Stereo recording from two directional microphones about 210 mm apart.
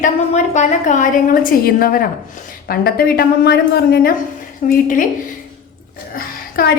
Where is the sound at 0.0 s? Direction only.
35° left (ahead or behind).